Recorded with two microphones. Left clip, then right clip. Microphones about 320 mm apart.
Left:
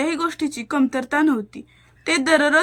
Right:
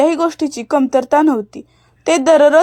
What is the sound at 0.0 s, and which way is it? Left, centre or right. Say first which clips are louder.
Speech: right 8 dB; centre.